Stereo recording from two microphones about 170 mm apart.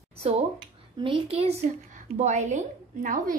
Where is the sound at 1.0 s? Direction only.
35° right (ahead or behind); by 3.3 s 50° right (ahead or behind).